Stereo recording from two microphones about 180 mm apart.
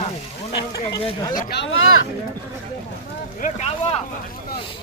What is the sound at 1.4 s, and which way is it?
Speech, 65° left (ahead or behind).